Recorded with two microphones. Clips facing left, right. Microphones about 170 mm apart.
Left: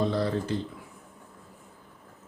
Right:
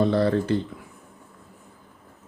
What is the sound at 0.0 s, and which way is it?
Speech, 65° right (ahead or behind).